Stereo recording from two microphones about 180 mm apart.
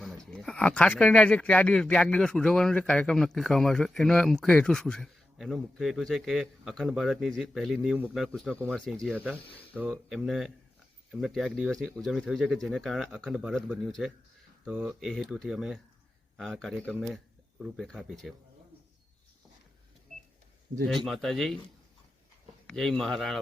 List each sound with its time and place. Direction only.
0.3 s speech: 5° left (ahead or behind)
9.1 s speech: 10° right (ahead or behind)
9.4 s speech: 30° left (ahead or behind)
9.9 s speech: centre (ahead or behind)
20.9 s speech: centre (ahead or behind)
22.6 s speech: centre (ahead or behind)